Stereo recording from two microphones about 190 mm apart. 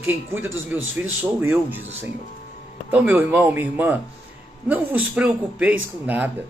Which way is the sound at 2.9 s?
10° right (ahead or behind).